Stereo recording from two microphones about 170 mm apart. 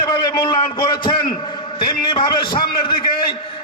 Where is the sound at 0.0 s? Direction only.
20° left (ahead or behind).